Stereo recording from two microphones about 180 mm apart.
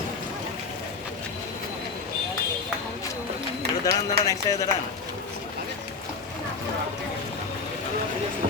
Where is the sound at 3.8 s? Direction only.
20° left (ahead or behind).